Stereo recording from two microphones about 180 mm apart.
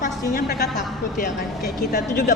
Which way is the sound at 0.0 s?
50° left (ahead or behind).